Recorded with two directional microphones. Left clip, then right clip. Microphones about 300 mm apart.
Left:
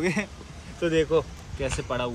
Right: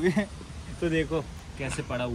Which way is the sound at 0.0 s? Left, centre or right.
Centre.